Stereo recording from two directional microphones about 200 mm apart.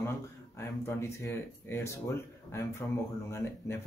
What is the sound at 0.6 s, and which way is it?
Speech, 10° left (ahead or behind).